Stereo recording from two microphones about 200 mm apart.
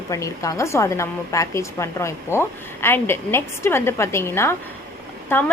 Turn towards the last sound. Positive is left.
turn(degrees=10)  # may be behind; listen again after turning